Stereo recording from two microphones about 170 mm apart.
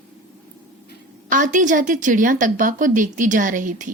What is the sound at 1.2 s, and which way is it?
A woman's voice, 50° right (ahead or behind).